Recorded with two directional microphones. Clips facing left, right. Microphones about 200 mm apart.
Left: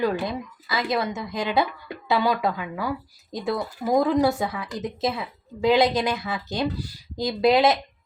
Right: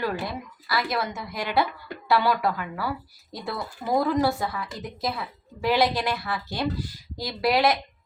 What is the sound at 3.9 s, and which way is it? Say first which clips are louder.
A woman's voice: left 3 dB; 15° left (ahead or behind).